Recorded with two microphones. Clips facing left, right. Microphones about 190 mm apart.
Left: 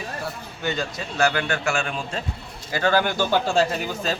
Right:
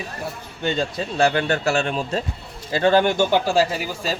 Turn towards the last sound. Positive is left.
turn(degrees=-5)  # may be behind; listen again after turning